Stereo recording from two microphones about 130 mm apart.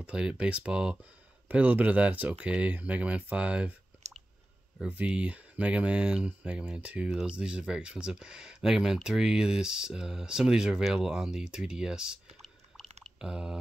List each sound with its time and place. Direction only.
0.0 s speech: 10° right (ahead or behind)
4.7 s speech: 10° right (ahead or behind)
13.0 s a sound: 5° right (ahead or behind)